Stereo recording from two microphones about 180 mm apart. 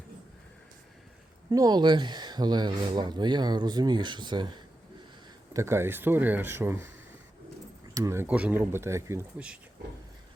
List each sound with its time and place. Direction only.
1.5 s speech: 20° right (ahead or behind)
5.5 s speech: 15° right (ahead or behind)
7.9 s speech: 15° right (ahead or behind)